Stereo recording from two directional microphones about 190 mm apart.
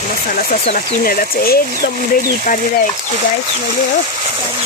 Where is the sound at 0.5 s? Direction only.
40° left (ahead or behind).